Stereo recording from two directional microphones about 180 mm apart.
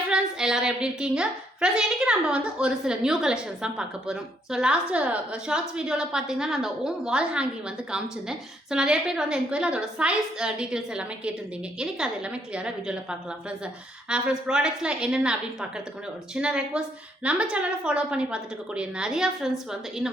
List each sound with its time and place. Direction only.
0.1 s a woman's voice: 5° right (ahead or behind)